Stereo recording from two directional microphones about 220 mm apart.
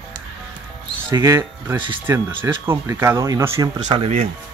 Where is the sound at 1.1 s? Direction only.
15° right (ahead or behind).